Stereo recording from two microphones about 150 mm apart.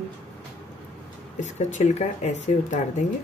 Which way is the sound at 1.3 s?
55° left (ahead or behind).